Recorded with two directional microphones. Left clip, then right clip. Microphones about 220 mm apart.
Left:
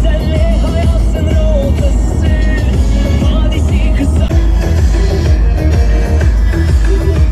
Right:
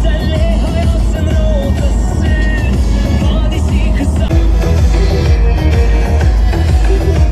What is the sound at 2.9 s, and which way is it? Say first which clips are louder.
Music: left 1 dB; 45° right (ahead or behind).